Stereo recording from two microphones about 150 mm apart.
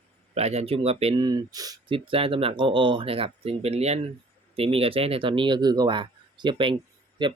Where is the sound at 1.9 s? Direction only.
35° right (ahead or behind).